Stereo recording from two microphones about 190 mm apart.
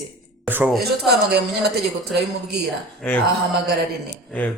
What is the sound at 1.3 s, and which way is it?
Speech, 60° right (ahead or behind).